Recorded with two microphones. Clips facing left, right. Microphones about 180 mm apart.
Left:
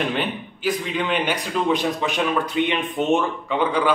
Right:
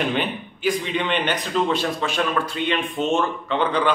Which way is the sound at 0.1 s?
5° left (ahead or behind).